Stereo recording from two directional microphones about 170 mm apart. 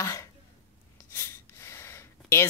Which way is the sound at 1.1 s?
15° left (ahead or behind).